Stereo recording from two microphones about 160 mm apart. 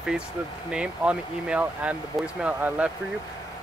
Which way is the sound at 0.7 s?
5° right (ahead or behind).